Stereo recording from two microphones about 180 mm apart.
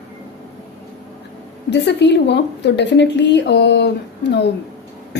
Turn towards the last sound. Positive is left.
turn(degrees=70)  # may be behind; listen again after turning